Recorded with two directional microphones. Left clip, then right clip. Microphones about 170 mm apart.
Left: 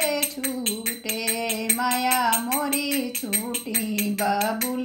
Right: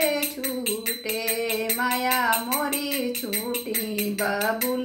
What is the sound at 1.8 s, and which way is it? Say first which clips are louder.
Music: left 2 dB; 20° right (ahead or behind).